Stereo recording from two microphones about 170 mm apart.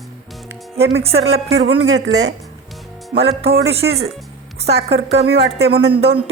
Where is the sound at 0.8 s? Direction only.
80° right.